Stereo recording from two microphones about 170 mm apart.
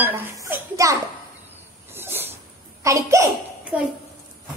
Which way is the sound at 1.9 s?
15° right (ahead or behind).